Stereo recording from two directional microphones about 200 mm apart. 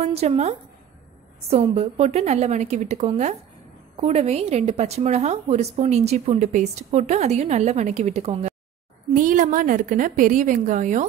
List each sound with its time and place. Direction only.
0.0 s a woman's voice: 30° right (ahead or behind)